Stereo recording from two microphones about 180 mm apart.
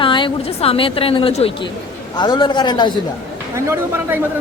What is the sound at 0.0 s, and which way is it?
A woman's voice, 25° left (ahead or behind).